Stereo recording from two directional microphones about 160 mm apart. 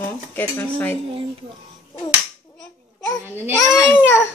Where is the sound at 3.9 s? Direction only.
15° left (ahead or behind).